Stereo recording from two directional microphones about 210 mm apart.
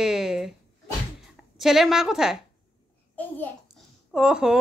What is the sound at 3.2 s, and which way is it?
Speech, 10° left (ahead or behind).